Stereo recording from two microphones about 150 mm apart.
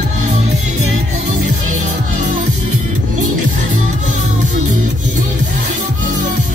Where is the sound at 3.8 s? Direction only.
55° right (ahead or behind).